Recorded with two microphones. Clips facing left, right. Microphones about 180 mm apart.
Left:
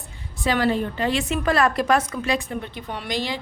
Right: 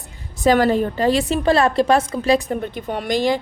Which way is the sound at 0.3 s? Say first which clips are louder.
Right 6 dB; 45° right (ahead or behind).